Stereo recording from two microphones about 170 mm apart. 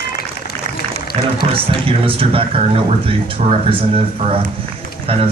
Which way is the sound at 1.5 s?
30° right (ahead or behind).